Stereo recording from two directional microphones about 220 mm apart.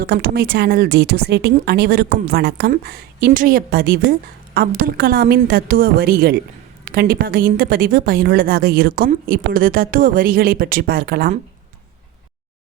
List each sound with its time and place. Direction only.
0.0 s a woman's voice: 45° right (ahead or behind)